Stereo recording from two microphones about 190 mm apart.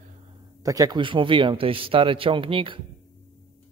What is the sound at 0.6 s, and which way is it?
Speech, 20° right (ahead or behind).